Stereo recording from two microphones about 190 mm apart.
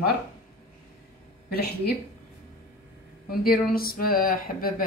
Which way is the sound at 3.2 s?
50° left (ahead or behind).